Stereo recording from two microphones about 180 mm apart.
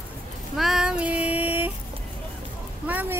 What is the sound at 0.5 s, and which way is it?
Child singing, centre (ahead or behind).